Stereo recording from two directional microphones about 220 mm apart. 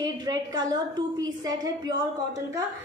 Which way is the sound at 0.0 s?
15° right (ahead or behind).